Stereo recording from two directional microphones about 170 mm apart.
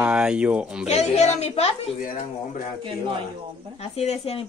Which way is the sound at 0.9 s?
40° left (ahead or behind).